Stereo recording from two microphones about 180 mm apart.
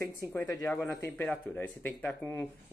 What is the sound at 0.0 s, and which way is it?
Speech, 20° left (ahead or behind).